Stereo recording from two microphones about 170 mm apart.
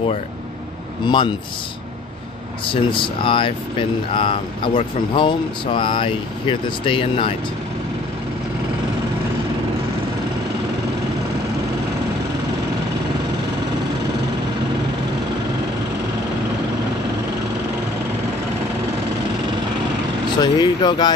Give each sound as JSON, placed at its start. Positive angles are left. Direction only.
{"t": 1.0, "sound": "speech", "side_deg": 30}
{"t": 2.6, "sound": "speech", "side_deg": 30}
{"t": 20.3, "sound": "vehicle", "side_deg": 25}